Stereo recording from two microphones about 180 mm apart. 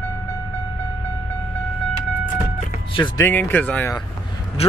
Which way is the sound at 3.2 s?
10° left (ahead or behind).